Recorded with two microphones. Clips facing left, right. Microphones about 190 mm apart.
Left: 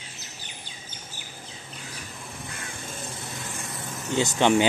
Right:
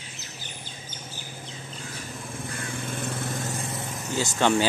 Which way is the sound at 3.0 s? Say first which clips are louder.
Right 7 dB; 60° right (ahead or behind).